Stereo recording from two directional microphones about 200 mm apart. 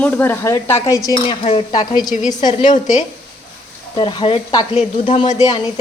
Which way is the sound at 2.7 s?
35° left (ahead or behind).